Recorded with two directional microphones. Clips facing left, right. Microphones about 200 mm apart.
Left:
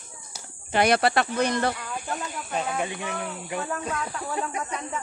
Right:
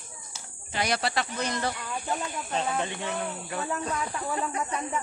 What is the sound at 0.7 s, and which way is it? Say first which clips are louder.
Speech: left 7 dB; 60° left (ahead or behind).